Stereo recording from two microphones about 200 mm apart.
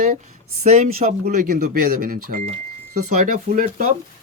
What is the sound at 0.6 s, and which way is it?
Speech, 35° right (ahead or behind).